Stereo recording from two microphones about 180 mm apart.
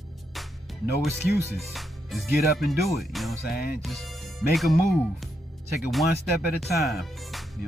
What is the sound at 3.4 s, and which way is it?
Music, 60° left (ahead or behind).